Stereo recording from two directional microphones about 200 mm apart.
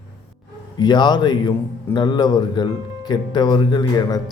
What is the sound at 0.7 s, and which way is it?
Speech, 20° left (ahead or behind).